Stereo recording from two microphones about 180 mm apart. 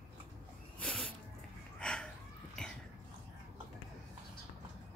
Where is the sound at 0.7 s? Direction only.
5° left (ahead or behind).